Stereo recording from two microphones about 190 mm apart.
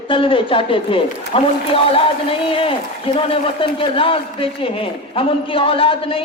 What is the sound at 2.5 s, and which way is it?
A man's voice, 30° left (ahead or behind).